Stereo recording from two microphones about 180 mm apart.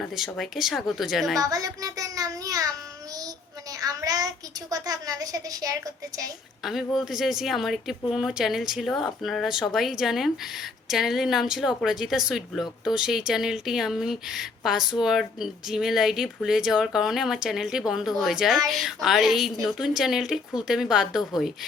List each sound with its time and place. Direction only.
0.0 s speech: centre (ahead or behind)
1.4 s a woman's voice: 20° right (ahead or behind)
6.6 s speech: centre (ahead or behind)